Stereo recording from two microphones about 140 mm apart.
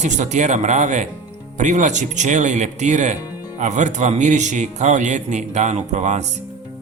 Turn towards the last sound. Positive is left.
turn(degrees=-60)  # may be behind; listen again after turning